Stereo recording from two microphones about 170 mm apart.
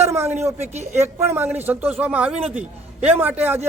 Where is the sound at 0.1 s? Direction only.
15° right (ahead or behind).